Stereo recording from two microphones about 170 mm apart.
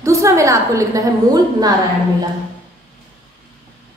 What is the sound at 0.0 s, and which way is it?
A woman's voice, 20° right (ahead or behind).